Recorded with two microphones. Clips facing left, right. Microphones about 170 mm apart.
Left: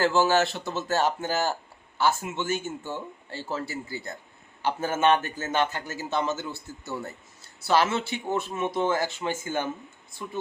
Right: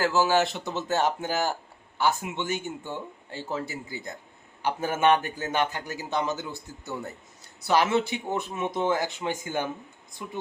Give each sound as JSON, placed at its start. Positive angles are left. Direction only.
{"t": 0.0, "sound": "a man's voice", "side_deg": -10}